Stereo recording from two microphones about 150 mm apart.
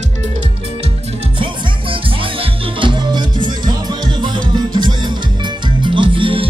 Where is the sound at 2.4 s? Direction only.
35° right (ahead or behind).